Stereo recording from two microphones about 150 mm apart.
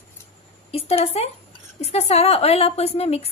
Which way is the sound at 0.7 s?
40° left (ahead or behind).